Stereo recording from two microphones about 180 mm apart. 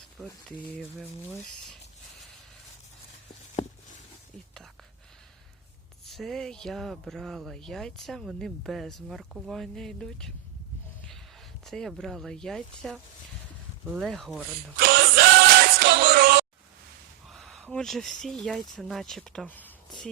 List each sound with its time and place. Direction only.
0.4 s speech: centre (ahead or behind)
6.1 s speech: centre (ahead or behind)
11.6 s speech: centre (ahead or behind)
14.8 s music: 60° right (ahead or behind)
17.2 s speech: centre (ahead or behind)